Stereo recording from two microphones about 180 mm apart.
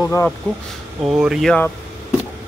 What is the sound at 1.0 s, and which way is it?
Speech, 5° right (ahead or behind).